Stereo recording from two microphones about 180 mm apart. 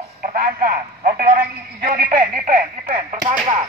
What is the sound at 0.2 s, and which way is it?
Radio, 50° right (ahead or behind).